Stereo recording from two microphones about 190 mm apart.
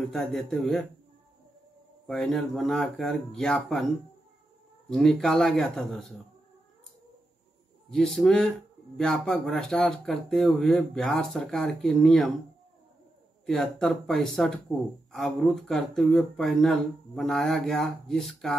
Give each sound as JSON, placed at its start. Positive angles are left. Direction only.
{"t": 0.0, "sound": "speech", "side_deg": 0}
{"t": 2.0, "sound": "speech", "side_deg": 0}
{"t": 4.8, "sound": "speech", "side_deg": 0}
{"t": 7.9, "sound": "speech", "side_deg": 0}
{"t": 13.5, "sound": "speech", "side_deg": 0}